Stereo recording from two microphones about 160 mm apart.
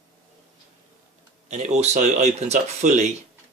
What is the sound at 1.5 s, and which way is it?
Speech, 45° right (ahead or behind).